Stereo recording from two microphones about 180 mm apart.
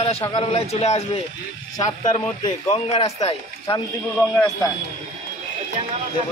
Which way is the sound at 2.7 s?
35° left (ahead or behind).